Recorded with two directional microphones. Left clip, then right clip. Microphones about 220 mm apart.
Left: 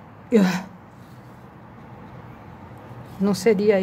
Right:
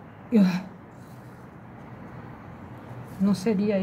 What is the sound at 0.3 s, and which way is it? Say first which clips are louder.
Speech: left 5 dB; 35° left (ahead or behind).